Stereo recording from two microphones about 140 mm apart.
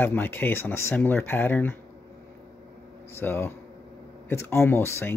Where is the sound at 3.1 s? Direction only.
15° left (ahead or behind).